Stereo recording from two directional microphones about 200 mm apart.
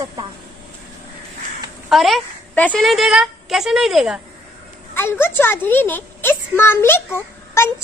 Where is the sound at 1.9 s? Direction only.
Centre (ahead or behind).